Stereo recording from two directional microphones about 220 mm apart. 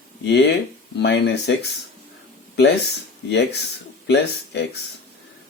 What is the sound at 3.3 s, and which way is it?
Speech, 50° left (ahead or behind).